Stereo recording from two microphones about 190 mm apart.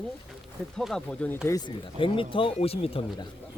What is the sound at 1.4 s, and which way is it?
Speech, 20° left (ahead or behind).